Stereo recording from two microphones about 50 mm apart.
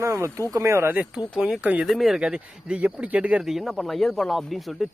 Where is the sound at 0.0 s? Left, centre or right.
Right.